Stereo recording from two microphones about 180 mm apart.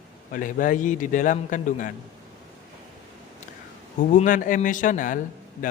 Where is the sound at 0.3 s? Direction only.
50° left (ahead or behind).